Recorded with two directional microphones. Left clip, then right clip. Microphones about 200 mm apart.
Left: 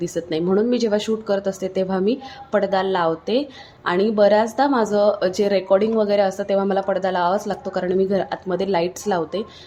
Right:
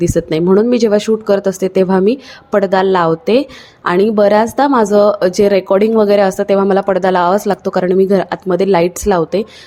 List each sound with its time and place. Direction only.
0.0 s speech: 35° right (ahead or behind)